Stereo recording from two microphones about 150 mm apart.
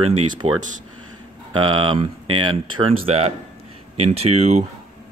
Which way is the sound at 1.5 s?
35° right (ahead or behind).